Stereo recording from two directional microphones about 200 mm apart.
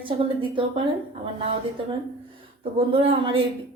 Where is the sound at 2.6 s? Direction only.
25° right (ahead or behind).